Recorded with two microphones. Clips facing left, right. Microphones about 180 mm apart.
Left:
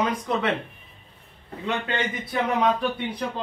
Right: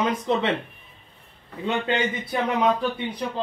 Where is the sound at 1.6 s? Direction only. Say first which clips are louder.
Right 3 dB; 20° right (ahead or behind).